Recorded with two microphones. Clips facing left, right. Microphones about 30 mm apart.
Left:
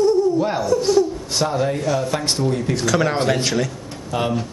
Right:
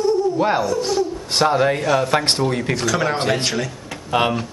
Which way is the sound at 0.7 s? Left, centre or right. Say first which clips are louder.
Left 3 dB; centre.